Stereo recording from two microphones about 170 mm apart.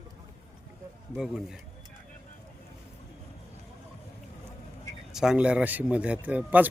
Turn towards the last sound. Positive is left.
turn(degrees=-10)  # may be behind; listen again after turning